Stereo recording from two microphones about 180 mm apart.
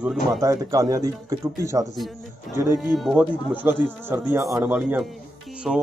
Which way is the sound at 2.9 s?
5° right (ahead or behind).